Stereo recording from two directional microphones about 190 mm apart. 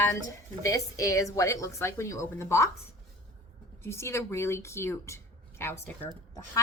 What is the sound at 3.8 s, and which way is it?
Speech, 15° left (ahead or behind).